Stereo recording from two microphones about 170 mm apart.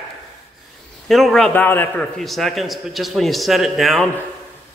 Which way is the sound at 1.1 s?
Centre (ahead or behind).